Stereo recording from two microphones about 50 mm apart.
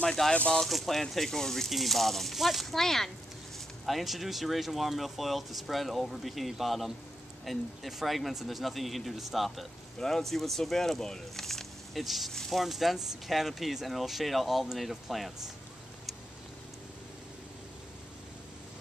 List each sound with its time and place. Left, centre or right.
0.0 s speech: centre
0.3 s speech: left
0.6 s speech: centre
9.9 s speech: centre
12.6 s speech: centre